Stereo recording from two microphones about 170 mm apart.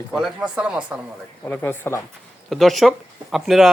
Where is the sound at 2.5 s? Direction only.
Centre (ahead or behind).